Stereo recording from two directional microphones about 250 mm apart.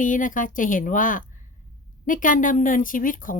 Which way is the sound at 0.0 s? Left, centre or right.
Left.